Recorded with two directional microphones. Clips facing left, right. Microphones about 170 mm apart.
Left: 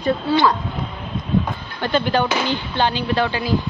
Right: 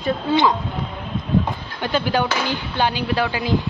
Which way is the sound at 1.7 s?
10° right (ahead or behind).